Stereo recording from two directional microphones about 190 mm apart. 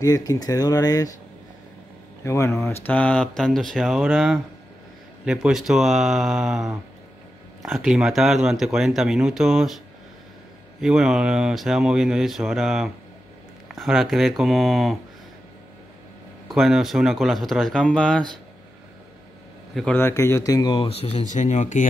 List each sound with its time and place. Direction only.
0.0 s speech: 20° left (ahead or behind)
2.2 s speech: 15° left (ahead or behind); by 9.8 s centre (ahead or behind)
10.8 s speech: centre (ahead or behind)
16.5 s speech: centre (ahead or behind)
19.7 s a man's voice: centre (ahead or behind)
20.0 s speech: 15° left (ahead or behind); by 21.8 s 40° left (ahead or behind)